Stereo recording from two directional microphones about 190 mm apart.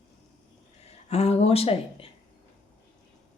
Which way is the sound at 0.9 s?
35° left (ahead or behind).